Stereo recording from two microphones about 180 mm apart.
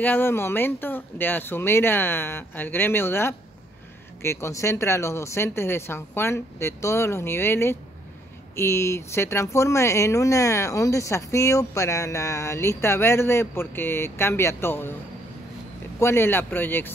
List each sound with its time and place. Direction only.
0.0 s speech: 10° left (ahead or behind)
16.0 s speech: 15° left (ahead or behind)